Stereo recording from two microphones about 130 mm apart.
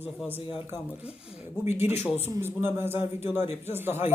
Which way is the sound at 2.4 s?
20° right (ahead or behind).